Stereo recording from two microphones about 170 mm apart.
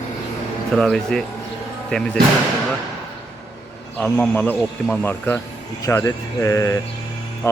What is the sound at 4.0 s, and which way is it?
Speech, 10° left (ahead or behind).